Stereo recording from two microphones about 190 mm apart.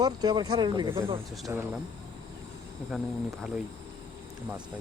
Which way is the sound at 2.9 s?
Centre (ahead or behind).